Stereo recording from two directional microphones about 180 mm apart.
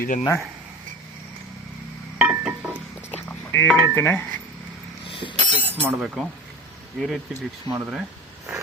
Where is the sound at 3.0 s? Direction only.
10° left (ahead or behind).